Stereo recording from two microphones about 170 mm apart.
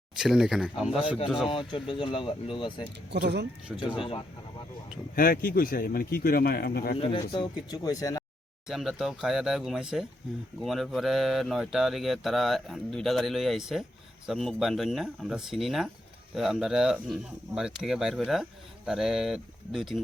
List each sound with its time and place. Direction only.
0.2 s speech: 5° right (ahead or behind)
1.5 s speech: 30° left (ahead or behind)
3.1 s speech: 85° right
3.7 s speech: 5° right (ahead or behind)
5.1 s speech: 60° left (ahead or behind)
6.9 s speech: 30° left (ahead or behind)
8.6 s speech: centre (ahead or behind)